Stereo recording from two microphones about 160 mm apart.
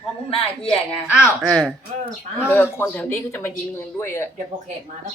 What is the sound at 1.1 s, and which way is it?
A woman's voice, centre (ahead or behind).